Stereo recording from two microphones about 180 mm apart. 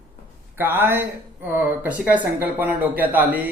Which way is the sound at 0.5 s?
10° right (ahead or behind).